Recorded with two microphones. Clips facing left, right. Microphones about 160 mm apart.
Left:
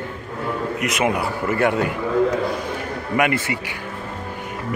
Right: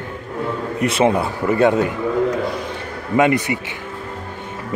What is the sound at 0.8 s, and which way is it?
Speech, 30° right (ahead or behind).